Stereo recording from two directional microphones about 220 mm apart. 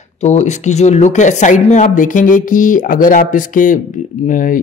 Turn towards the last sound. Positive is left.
turn(degrees=35)  # may be behind; listen again after turning